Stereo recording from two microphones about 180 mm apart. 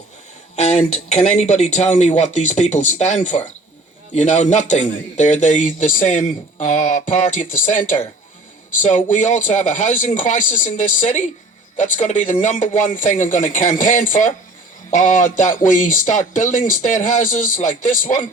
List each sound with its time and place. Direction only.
0.5 s a man's voice: 35° left (ahead or behind)